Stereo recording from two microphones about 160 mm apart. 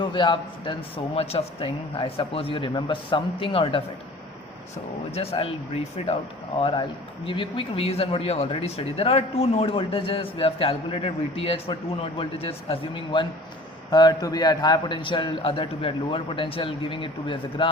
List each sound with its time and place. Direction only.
0.0 s speech: 30° left (ahead or behind)
5.1 s speech: 40° left (ahead or behind)